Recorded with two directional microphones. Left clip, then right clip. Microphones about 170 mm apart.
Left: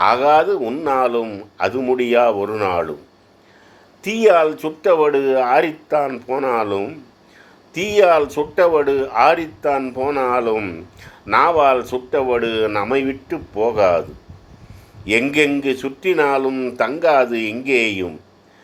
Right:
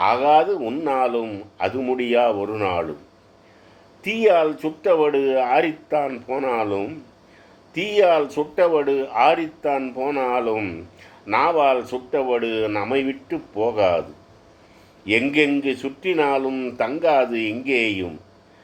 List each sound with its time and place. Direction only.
0.0 s speech: 35° left (ahead or behind)
4.0 s speech: 35° left (ahead or behind)
15.0 s speech: 35° left (ahead or behind)